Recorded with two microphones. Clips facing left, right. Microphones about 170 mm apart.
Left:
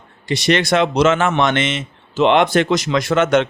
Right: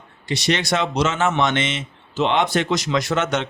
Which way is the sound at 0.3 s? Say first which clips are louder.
Left 5 dB; 55° left (ahead or behind).